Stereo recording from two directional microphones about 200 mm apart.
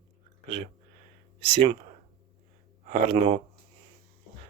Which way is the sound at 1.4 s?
30° right (ahead or behind).